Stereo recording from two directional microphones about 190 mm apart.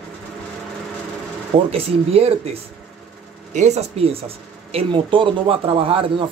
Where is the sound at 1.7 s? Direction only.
30° right (ahead or behind).